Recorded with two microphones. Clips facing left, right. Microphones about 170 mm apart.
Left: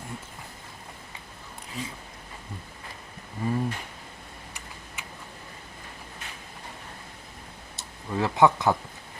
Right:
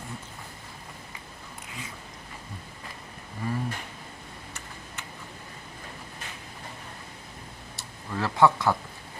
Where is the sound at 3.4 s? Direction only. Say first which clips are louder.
Left 3 dB; 25° left (ahead or behind).